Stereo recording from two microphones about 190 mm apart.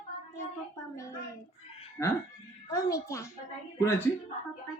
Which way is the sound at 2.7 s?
15° left (ahead or behind).